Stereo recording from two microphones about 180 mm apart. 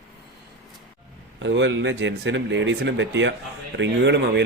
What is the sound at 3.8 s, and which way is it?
Speech, 75° right (ahead or behind).